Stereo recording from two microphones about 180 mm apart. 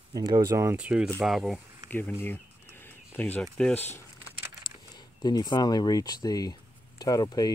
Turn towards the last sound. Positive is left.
turn(degrees=20)  # may be behind; listen again after turning